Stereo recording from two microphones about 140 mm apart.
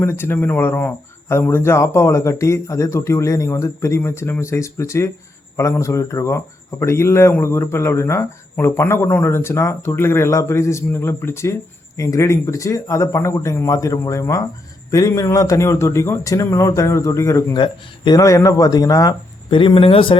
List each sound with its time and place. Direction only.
0.0 s speech: 15° left (ahead or behind)
19.5 s speech: 35° left (ahead or behind)